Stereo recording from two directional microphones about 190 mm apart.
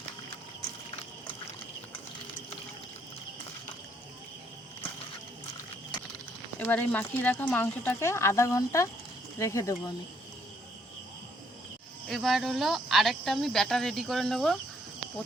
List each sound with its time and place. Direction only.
6.6 s speech: 10° left (ahead or behind)
12.0 s speech: centre (ahead or behind)